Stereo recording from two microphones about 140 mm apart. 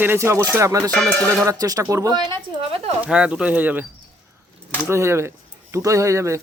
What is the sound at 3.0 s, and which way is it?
Speech, 5° right (ahead or behind).